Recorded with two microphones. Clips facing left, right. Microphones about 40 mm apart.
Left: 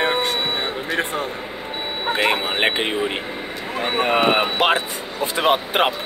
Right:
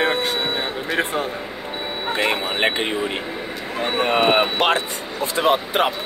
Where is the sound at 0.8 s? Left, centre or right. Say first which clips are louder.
Right 3 dB; centre.